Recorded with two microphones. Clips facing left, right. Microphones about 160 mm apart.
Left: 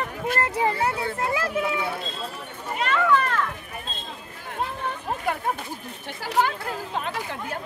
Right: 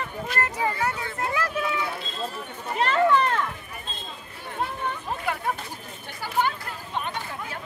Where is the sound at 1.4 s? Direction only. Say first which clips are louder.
Left 2 dB; 25° left (ahead or behind).